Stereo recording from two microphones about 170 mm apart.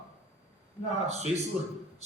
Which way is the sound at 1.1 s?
40° right (ahead or behind).